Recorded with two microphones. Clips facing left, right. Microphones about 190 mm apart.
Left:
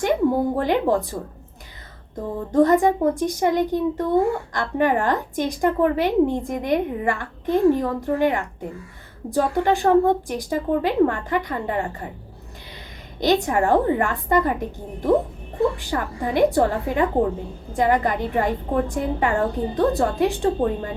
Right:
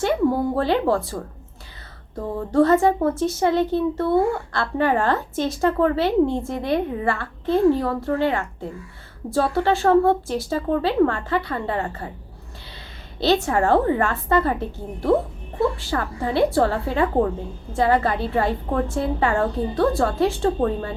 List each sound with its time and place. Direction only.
0.0 s speech: 15° left (ahead or behind)
2.5 s a child's voice: 15° left (ahead or behind)
13.1 s a child's voice: 15° left (ahead or behind)